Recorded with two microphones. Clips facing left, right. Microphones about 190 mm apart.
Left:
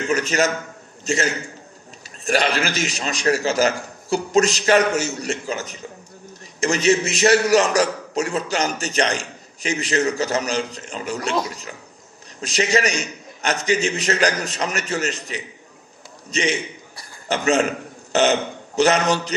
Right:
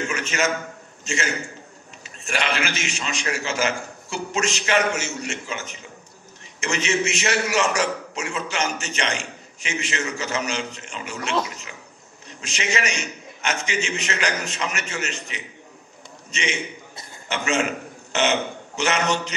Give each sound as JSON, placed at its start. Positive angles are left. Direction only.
{"t": 0.1, "sound": "a man's voice", "side_deg": 35}